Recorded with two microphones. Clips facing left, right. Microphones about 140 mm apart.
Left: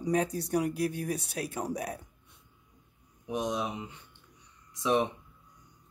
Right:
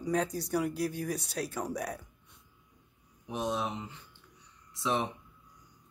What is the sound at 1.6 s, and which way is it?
Speech, 25° left (ahead or behind).